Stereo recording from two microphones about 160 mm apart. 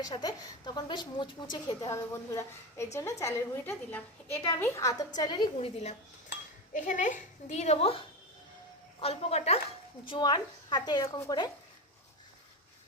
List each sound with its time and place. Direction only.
0.0 s a woman's voice: 25° left (ahead or behind); by 6.0 s 40° left (ahead or behind)
6.7 s a child's voice: 50° left (ahead or behind)
10.1 s a woman's voice: 30° left (ahead or behind)